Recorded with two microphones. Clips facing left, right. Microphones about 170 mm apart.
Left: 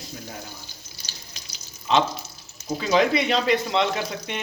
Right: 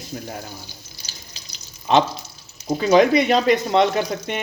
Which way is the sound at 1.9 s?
55° right (ahead or behind).